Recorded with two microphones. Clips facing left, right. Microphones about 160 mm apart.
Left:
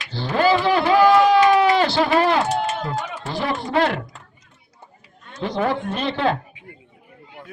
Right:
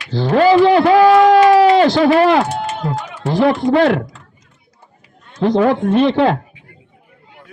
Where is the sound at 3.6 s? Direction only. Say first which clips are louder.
Right 9 dB; 80° right.